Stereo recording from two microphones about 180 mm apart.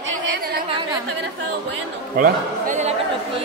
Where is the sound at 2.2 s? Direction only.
45° right (ahead or behind).